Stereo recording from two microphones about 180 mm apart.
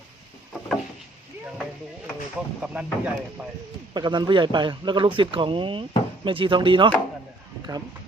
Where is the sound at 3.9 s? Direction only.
25° right (ahead or behind).